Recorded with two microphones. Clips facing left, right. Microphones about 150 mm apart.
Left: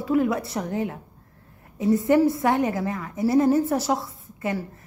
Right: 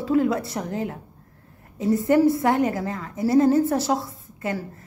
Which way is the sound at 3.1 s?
20° left (ahead or behind).